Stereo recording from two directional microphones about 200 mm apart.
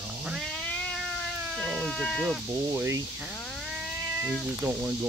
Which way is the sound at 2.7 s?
15° right (ahead or behind).